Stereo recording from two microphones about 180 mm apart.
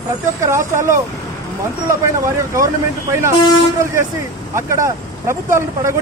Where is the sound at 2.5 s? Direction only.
15° right (ahead or behind).